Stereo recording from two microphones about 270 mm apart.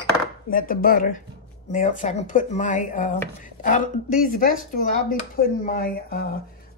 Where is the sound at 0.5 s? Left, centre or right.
Left.